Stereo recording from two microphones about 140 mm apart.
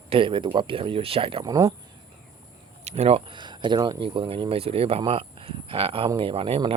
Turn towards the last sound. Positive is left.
turn(degrees=-40)  # may be behind; listen again after turning